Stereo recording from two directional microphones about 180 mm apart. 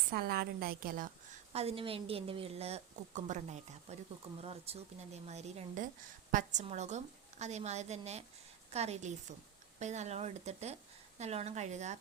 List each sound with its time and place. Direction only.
0.1 s a woman's voice: 60° right (ahead or behind)
1.5 s a woman's voice: 30° right (ahead or behind)